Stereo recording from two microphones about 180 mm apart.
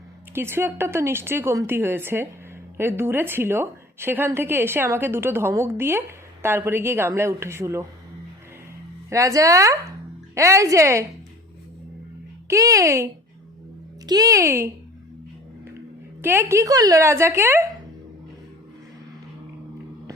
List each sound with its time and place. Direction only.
0.3 s a woman's voice: 10° right (ahead or behind)
9.0 s a woman's voice: 15° right (ahead or behind)
12.5 s a woman's voice: 20° right (ahead or behind)
14.1 s a woman's voice: 20° right (ahead or behind)
16.2 s a woman's voice: 15° right (ahead or behind)